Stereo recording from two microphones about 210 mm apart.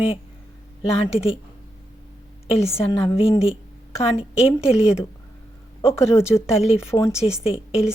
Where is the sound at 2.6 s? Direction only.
30° left (ahead or behind).